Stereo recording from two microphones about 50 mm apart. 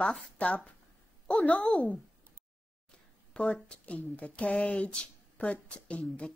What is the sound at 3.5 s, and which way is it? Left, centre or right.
Speech, left.